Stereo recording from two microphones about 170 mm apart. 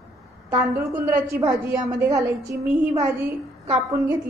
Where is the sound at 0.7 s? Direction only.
15° right (ahead or behind).